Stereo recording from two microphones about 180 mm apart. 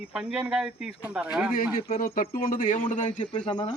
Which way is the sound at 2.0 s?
50° left (ahead or behind).